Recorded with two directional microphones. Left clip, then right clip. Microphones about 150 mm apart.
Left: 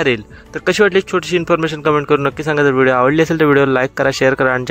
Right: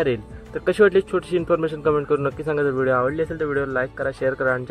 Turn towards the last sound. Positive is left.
turn(degrees=35)  # may be behind; listen again after turning